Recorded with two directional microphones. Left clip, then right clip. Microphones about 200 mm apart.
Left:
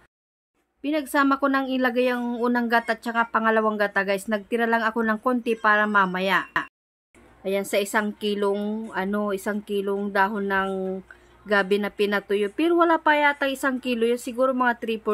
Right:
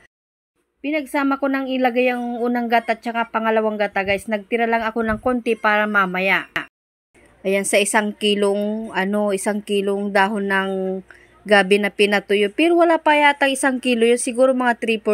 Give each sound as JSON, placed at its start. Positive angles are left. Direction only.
{"t": 0.8, "sound": "a woman's voice", "side_deg": -10}
{"t": 7.7, "sound": "speech", "side_deg": -20}
{"t": 8.9, "sound": "speech", "side_deg": -20}